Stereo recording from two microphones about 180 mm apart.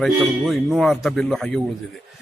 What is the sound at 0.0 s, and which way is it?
A man's voice, centre (ahead or behind).